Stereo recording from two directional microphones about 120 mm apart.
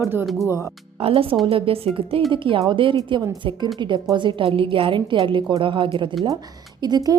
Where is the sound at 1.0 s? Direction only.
55° right (ahead or behind).